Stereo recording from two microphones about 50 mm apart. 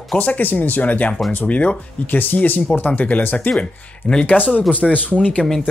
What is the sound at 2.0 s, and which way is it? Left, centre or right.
Speech, left.